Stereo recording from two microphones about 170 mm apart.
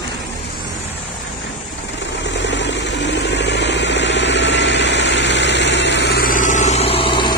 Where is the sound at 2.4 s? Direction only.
90° left.